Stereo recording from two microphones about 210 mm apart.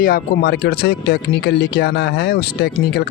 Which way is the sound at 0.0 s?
45° left (ahead or behind).